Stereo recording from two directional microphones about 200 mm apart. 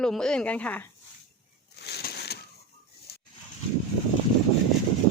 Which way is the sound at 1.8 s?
55° left (ahead or behind).